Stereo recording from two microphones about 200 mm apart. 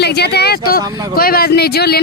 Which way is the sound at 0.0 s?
55° left (ahead or behind).